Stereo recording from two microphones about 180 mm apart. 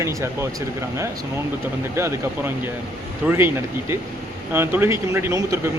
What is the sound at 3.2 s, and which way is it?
Speech, 10° right (ahead or behind).